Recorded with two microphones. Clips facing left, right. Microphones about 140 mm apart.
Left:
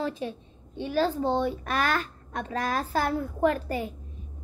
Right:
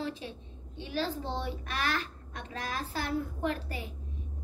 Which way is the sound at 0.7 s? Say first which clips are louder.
Left 8 dB; 50° left (ahead or behind).